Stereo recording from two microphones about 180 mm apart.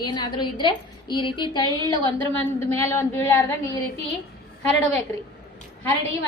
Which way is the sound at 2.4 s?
15° left (ahead or behind).